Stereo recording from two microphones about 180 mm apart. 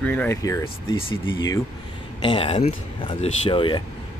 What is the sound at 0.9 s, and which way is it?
Speech, 30° left (ahead or behind).